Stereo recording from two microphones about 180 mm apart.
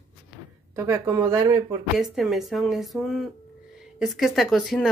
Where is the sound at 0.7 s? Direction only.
15° right (ahead or behind).